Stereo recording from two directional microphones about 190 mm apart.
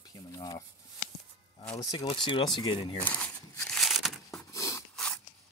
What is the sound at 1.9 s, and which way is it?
Speech, 25° left (ahead or behind).